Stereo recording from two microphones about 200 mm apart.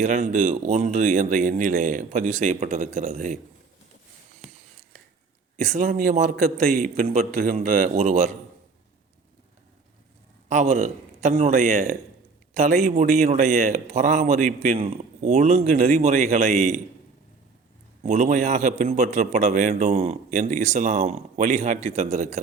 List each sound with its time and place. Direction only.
0.0 s a man's voice: 35° right (ahead or behind)
5.7 s a man's voice: 40° right (ahead or behind)
10.5 s a man's voice: 35° right (ahead or behind)
18.0 s a man's voice: 35° right (ahead or behind)